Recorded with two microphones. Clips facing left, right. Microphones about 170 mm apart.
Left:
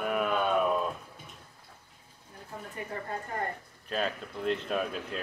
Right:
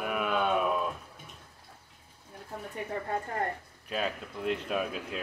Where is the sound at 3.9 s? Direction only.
10° right (ahead or behind).